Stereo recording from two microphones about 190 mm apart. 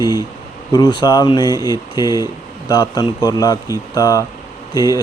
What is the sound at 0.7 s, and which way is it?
Speech, 20° left (ahead or behind).